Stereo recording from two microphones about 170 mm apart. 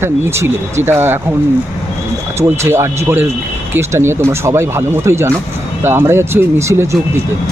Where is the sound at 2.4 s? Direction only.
15° right (ahead or behind).